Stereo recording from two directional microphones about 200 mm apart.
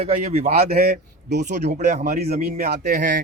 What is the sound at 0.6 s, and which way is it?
Speech, 50° right (ahead or behind).